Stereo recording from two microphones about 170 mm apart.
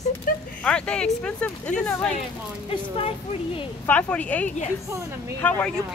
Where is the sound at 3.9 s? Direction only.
10° left (ahead or behind).